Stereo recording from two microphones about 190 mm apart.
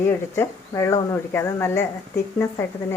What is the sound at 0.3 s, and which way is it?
Speech, 15° left (ahead or behind).